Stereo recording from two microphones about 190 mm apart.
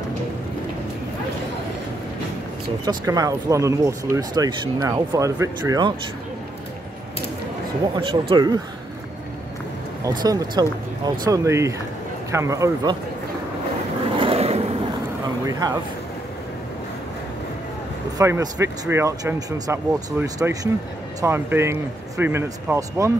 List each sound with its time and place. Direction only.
2.8 s speech: 20° right (ahead or behind)
7.9 s speech: 25° right (ahead or behind)
10.0 s speech: 20° right (ahead or behind)
14.2 s vehicle: 30° right (ahead or behind)
15.2 s a sound: 20° right (ahead or behind)
18.1 s speech: 15° right (ahead or behind)